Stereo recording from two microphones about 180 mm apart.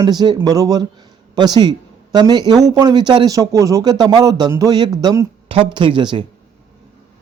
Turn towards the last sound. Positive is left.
turn(degrees=-25)  # may be behind; listen again after turning